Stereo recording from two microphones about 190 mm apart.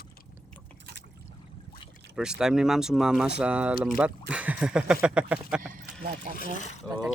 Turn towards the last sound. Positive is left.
turn(degrees=35)  # may be behind; listen again after turning